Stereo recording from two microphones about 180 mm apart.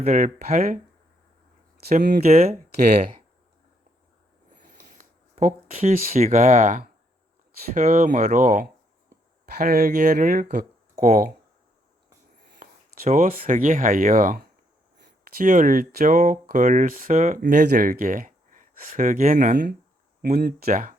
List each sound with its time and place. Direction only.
0.0 s speech: 40° right (ahead or behind)
1.9 s speech: 50° right (ahead or behind)
2.2 s speech: 35° right (ahead or behind)
2.8 s speech: 50° right (ahead or behind)
4.8 s speech: 45° right (ahead or behind)
13.1 s speech: 40° right (ahead or behind)
20.2 s speech: 55° right (ahead or behind)